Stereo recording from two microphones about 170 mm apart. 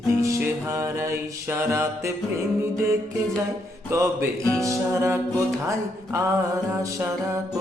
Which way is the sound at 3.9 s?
20° right (ahead or behind).